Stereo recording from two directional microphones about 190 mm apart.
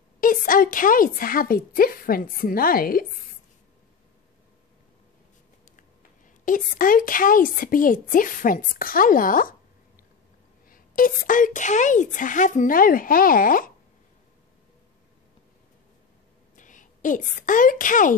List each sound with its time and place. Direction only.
0.2 s a woman's voice: 45° left (ahead or behind)
6.4 s a woman's voice: 45° left (ahead or behind)
10.7 s a woman's voice: 45° left (ahead or behind)
16.5 s a woman's voice: 45° left (ahead or behind)